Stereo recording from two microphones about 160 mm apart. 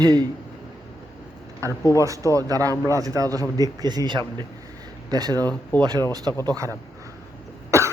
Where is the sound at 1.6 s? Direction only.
20° right (ahead or behind).